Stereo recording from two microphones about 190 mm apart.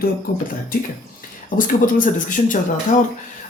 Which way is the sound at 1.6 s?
45° left (ahead or behind).